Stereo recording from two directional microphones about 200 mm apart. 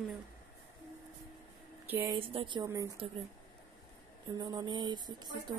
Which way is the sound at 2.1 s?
25° right (ahead or behind).